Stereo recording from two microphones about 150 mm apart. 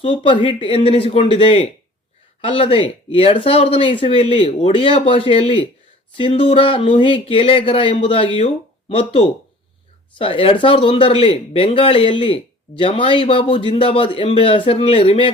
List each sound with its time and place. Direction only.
0.0 s speech: 35° left (ahead or behind)